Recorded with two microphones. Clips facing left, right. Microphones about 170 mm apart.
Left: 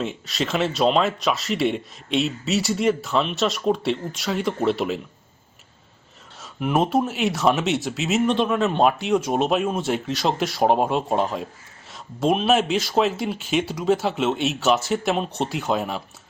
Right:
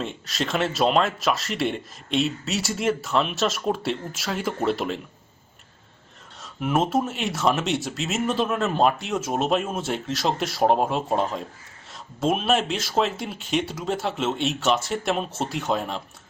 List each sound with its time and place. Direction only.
0.0 s speech: centre (ahead or behind)
6.4 s speech: centre (ahead or behind)